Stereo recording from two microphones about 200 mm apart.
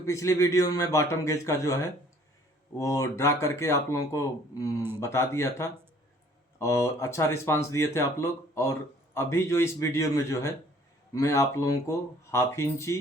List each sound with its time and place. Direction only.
0.0 s speech: 15° left (ahead or behind)